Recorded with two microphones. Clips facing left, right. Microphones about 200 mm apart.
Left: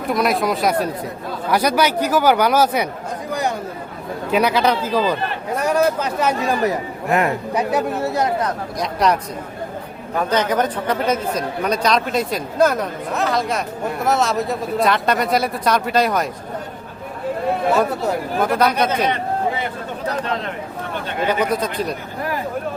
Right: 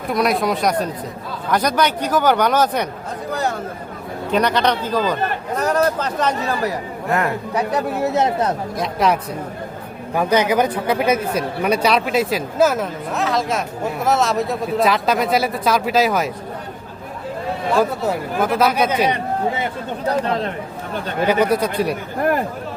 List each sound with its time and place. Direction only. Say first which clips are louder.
0.1 s speech: even; centre (ahead or behind)
4.3 s a man's voice: left 1 dB; 5° left (ahead or behind)
8.0 s speech: right 2 dB; 25° right (ahead or behind)
8.8 s speech: even; centre (ahead or behind)
10.2 s speech: right 2 dB; 10° right (ahead or behind)
17.7 s speech: even; centre (ahead or behind)
21.2 s speech: right 3 dB; 10° right (ahead or behind)